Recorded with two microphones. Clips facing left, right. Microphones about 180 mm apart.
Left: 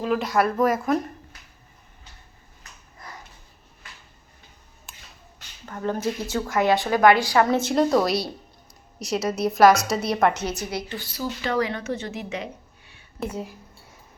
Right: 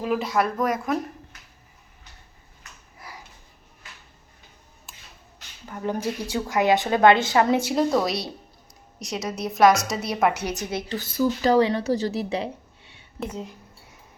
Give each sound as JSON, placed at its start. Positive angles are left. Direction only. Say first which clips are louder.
{"t": 0.0, "sound": "a woman's voice", "louder": "left 1 dB", "side_deg": -5}
{"t": 4.9, "sound": "a sound", "louder": "left 1 dB", "side_deg": 0}
{"t": 5.6, "sound": "a woman's voice", "louder": "left 1 dB", "side_deg": -10}
{"t": 7.6, "sound": "a woman's voice", "louder": "left 2 dB", "side_deg": -5}
{"t": 10.8, "sound": "a woman's voice", "louder": "right 7 dB", "side_deg": -45}
{"t": 11.5, "sound": "a woman's voice", "louder": "right 5 dB", "side_deg": -30}
{"t": 13.1, "sound": "speech", "louder": "left 2 dB", "side_deg": 10}